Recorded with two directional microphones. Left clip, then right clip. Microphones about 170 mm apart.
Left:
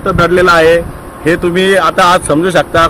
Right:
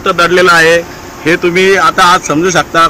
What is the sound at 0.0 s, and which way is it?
Speech, 75° left (ahead or behind).